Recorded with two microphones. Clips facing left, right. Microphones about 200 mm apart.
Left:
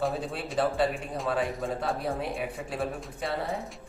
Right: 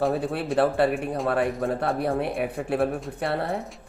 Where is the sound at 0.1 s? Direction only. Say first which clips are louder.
Right 7 dB; 60° right (ahead or behind).